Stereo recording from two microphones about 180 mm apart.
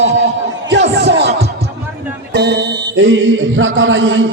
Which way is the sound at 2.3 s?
75° right (ahead or behind).